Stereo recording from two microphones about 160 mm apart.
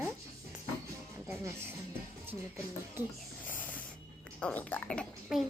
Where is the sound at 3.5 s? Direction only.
10° left (ahead or behind).